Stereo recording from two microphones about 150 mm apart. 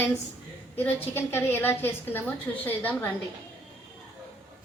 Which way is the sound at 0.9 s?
15° left (ahead or behind).